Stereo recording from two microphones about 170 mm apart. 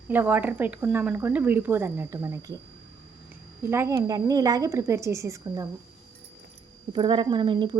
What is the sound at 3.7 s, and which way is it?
Speech, 15° right (ahead or behind).